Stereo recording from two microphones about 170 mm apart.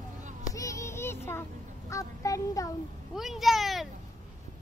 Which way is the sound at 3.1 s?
Centre (ahead or behind).